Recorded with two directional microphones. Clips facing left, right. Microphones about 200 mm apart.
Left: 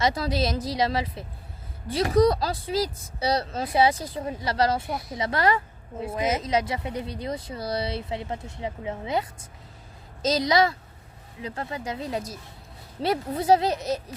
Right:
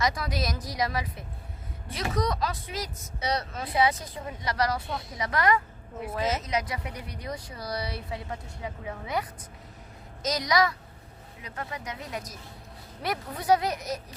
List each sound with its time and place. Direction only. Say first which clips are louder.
0.0 s speech: left 5 dB; 30° left (ahead or behind)
6.1 s a woman's voice: left 3 dB; 15° left (ahead or behind)
6.4 s speech: left 5 dB; 30° left (ahead or behind)